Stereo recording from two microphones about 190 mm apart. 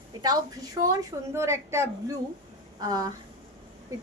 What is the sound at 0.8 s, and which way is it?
A woman's voice, 15° right (ahead or behind).